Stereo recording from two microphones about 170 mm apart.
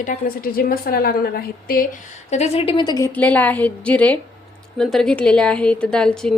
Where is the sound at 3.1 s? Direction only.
10° left (ahead or behind).